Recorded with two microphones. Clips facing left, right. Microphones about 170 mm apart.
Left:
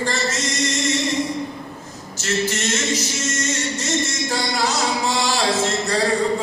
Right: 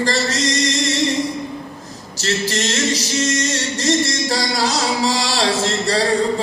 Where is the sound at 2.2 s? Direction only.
35° right (ahead or behind).